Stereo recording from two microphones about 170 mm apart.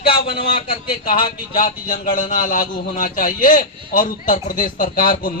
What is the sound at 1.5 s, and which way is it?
A man's voice, 55° left (ahead or behind).